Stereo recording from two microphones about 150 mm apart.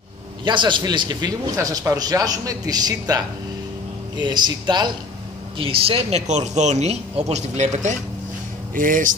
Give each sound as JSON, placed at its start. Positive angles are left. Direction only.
{"t": 0.5, "sound": "a man's voice", "side_deg": -30}
{"t": 8.7, "sound": "speech", "side_deg": -65}